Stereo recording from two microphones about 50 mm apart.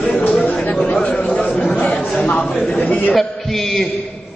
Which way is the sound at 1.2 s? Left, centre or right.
Left.